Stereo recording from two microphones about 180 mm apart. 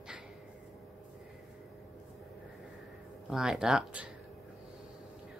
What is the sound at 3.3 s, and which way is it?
Speech, 5° right (ahead or behind).